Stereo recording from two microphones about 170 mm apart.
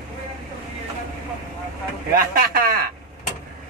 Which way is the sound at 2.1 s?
60° right (ahead or behind).